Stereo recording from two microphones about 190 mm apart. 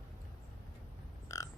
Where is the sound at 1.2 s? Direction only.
15° left (ahead or behind).